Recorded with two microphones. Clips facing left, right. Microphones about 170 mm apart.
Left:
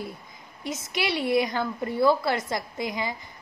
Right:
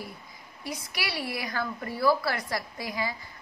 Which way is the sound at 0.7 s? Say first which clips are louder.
Left 6 dB; 20° left (ahead or behind).